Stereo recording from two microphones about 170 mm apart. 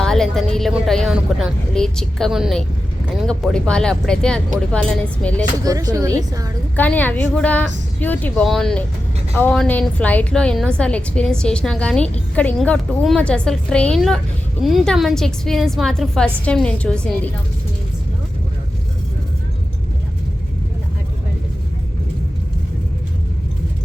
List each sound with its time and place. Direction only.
0.0 s a woman's voice: 5° left (ahead or behind)
5.6 s a woman's voice: 20° right (ahead or behind)
6.7 s a woman's voice: 10° left (ahead or behind)